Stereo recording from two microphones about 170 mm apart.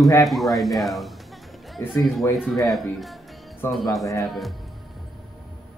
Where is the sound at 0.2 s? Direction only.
Centre (ahead or behind).